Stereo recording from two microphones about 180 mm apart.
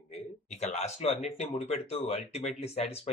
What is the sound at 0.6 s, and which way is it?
Speech, 40° left (ahead or behind).